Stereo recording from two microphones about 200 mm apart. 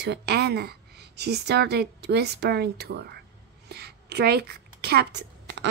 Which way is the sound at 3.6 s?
55° right (ahead or behind).